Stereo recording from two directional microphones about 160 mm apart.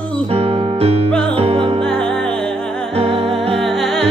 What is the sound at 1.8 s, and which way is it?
Music, 5° left (ahead or behind).